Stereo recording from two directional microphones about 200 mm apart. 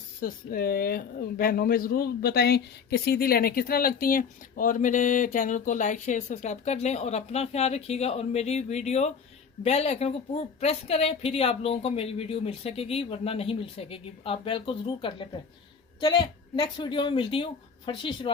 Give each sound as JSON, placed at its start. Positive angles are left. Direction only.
{"t": 0.2, "sound": "a woman's voice", "side_deg": 45}